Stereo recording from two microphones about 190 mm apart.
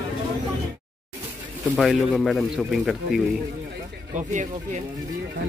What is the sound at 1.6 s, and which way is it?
A man's voice, centre (ahead or behind).